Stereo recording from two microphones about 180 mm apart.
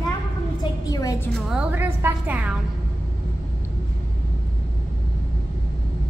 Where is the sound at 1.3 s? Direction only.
5° right (ahead or behind).